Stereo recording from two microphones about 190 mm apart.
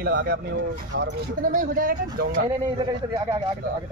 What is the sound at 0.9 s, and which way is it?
Speech, 90° right.